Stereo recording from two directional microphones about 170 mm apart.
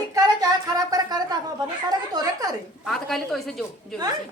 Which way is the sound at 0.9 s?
25° right (ahead or behind).